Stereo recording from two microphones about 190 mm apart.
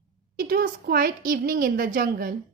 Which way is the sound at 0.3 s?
50° right (ahead or behind).